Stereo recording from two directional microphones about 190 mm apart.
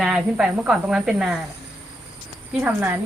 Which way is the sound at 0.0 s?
Centre (ahead or behind).